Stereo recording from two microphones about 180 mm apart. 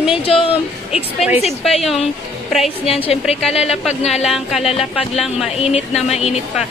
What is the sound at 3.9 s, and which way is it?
Speech, 40° left (ahead or behind).